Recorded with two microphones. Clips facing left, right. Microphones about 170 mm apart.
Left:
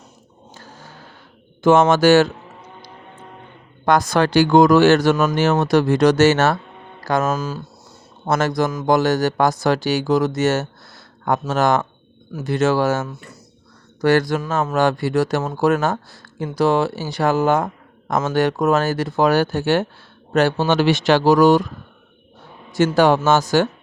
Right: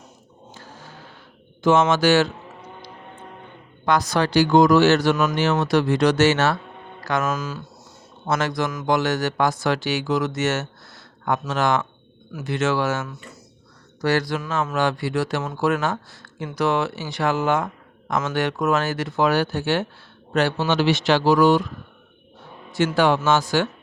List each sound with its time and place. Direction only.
1.6 s speech: 50° left (ahead or behind)
3.8 s speech: 50° left (ahead or behind)
7.0 s speech: 35° left (ahead or behind)
8.3 s speech: 45° left (ahead or behind)
14.0 s speech: 50° left (ahead or behind)
22.7 s speech: 40° left (ahead or behind)